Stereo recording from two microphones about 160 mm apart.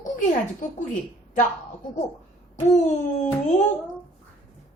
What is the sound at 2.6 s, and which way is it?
Speech, 50° left (ahead or behind).